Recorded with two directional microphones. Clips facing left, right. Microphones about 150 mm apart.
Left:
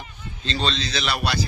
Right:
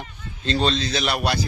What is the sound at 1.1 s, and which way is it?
Speech, 45° right (ahead or behind).